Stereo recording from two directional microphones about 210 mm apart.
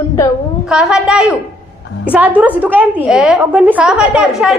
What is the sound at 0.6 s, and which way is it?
A woman's voice, 5° right (ahead or behind).